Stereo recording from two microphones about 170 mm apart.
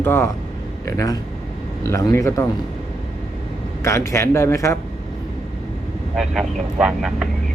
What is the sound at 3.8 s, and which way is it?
Speech, 15° left (ahead or behind).